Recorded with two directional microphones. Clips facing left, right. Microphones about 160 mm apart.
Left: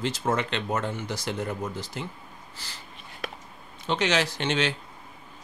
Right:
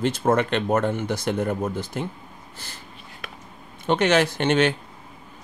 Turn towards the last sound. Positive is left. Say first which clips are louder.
# right 7 dB
turn(degrees=-55)  # may be behind; listen again after turning